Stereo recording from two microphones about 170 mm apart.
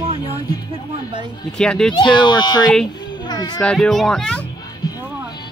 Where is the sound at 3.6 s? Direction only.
5° left (ahead or behind).